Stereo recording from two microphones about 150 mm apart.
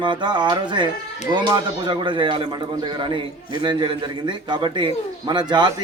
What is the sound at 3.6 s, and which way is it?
Speech, 30° right (ahead or behind).